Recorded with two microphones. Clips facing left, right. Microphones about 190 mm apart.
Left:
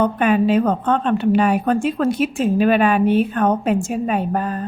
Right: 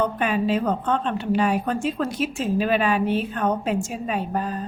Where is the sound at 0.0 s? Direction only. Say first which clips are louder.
Left 6 dB; 60° left (ahead or behind).